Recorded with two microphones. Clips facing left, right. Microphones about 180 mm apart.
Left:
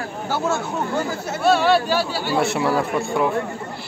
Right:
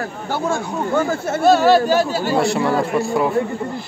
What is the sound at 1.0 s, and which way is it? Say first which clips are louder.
Speech: right 4 dB; 50° right (ahead or behind).